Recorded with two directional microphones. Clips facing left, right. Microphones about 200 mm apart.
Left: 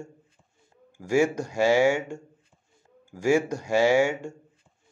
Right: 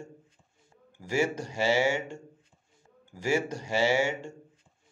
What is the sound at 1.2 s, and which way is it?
Speech, 10° left (ahead or behind).